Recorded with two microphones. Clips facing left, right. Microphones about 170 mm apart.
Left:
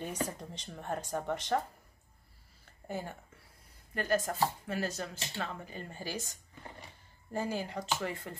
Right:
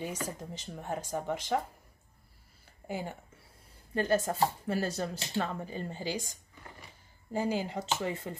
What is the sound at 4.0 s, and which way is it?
Speech, 25° right (ahead or behind).